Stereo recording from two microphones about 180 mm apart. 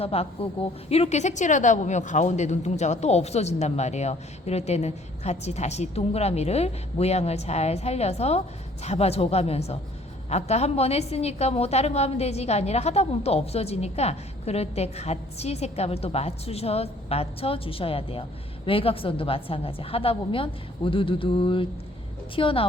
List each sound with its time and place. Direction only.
0.0 s a woman's voice: 35° left (ahead or behind)